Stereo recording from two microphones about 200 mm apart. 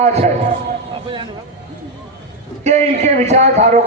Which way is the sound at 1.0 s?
25° right (ahead or behind).